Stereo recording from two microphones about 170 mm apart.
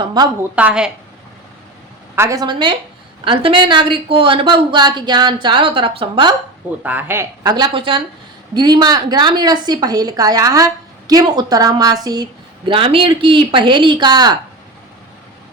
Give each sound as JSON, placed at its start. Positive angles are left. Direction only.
{"t": 0.0, "sound": "a woman's voice", "side_deg": -25}
{"t": 0.5, "sound": "a woman's voice", "side_deg": -5}
{"t": 2.1, "sound": "a woman's voice", "side_deg": -20}
{"t": 6.8, "sound": "speech", "side_deg": -10}
{"t": 7.5, "sound": "a woman's voice", "side_deg": -30}